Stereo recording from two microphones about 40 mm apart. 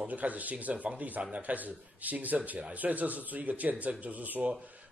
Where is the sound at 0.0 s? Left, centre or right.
Right.